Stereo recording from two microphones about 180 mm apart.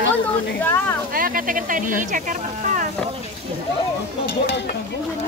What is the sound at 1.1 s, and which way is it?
Speech, 50° right (ahead or behind).